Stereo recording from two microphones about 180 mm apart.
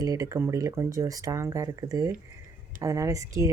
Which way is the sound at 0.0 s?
20° right (ahead or behind).